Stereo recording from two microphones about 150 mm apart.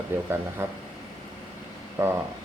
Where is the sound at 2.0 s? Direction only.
15° right (ahead or behind).